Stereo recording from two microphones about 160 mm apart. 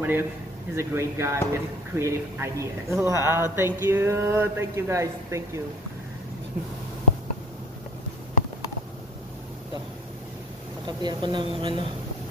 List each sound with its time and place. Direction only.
0.0 s speech: 15° right (ahead or behind)
10.9 s a woman's voice: 25° right (ahead or behind)